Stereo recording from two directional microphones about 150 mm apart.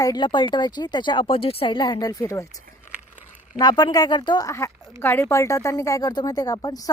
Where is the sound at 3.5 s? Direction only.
25° left (ahead or behind).